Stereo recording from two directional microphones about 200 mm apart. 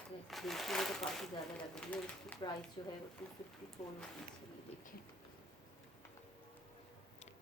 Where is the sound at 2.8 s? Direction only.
25° left (ahead or behind).